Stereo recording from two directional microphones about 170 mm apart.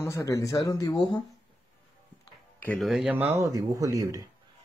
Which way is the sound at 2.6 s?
5° left (ahead or behind).